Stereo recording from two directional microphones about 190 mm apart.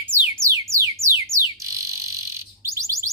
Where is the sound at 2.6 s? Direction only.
15° right (ahead or behind).